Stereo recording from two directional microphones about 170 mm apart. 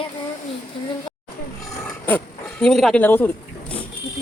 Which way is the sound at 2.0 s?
5° left (ahead or behind).